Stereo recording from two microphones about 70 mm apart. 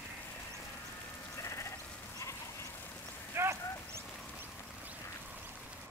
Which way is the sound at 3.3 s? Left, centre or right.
Right.